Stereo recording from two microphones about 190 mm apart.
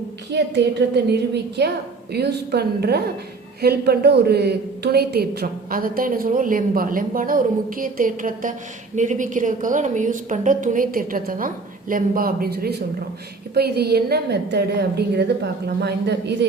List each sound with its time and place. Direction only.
0.3 s a woman's voice: 60° right (ahead or behind)